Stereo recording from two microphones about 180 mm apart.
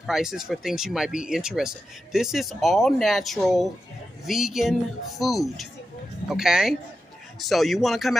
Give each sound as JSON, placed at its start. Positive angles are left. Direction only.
{"t": 0.0, "sound": "speech", "side_deg": 0}